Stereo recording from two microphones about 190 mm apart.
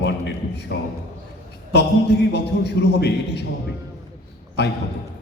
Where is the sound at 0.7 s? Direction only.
60° left (ahead or behind).